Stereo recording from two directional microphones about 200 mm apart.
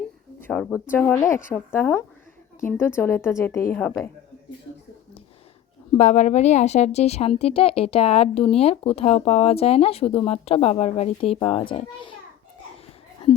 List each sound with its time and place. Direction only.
0.4 s a woman's voice: 5° left (ahead or behind)
6.0 s a woman's voice: 35° left (ahead or behind)